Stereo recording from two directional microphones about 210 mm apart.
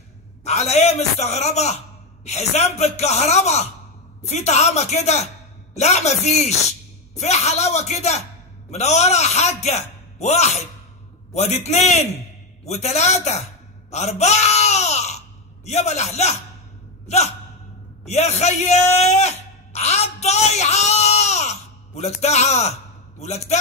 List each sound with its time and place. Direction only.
0.4 s a man's voice: 30° left (ahead or behind)
12.6 s a sound: 30° left (ahead or behind)
15.6 s a man's voice: 30° left (ahead or behind)
18.0 s a man's voice: 30° left (ahead or behind)